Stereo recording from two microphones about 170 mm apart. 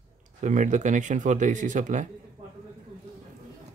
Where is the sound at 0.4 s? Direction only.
45° right (ahead or behind).